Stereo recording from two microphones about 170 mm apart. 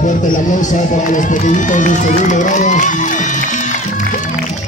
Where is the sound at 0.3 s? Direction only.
45° left (ahead or behind).